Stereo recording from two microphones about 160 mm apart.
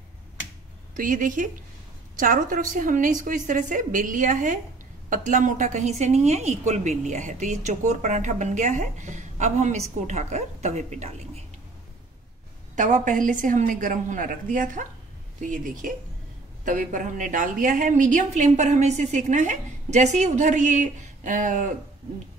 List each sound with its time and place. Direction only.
0.9 s a woman's voice: 55° right (ahead or behind)
12.7 s a woman's voice: 50° right (ahead or behind)